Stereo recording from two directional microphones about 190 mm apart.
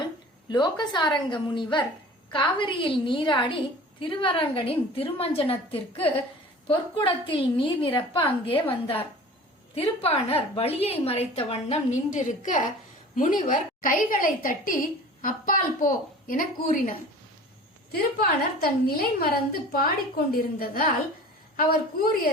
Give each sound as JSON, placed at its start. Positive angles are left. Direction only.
{"t": 0.5, "sound": "a woman's voice", "side_deg": 25}
{"t": 9.7, "sound": "a woman's voice", "side_deg": 30}
{"t": 17.9, "sound": "a woman's voice", "side_deg": 55}